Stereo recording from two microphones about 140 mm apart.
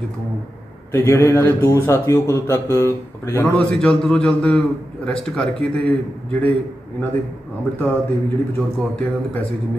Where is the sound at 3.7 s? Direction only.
5° left (ahead or behind).